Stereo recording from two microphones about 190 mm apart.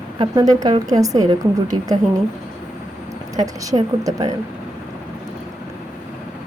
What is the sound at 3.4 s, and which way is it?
Speech, 20° right (ahead or behind).